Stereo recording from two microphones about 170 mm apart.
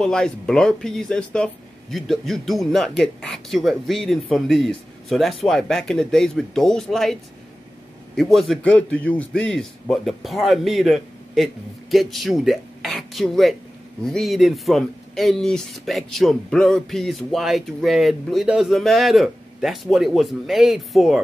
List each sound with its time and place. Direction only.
0.0 s speech: 5° left (ahead or behind)
8.2 s speech: centre (ahead or behind)